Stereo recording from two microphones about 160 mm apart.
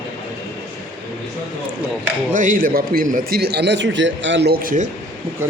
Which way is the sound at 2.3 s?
55° right (ahead or behind).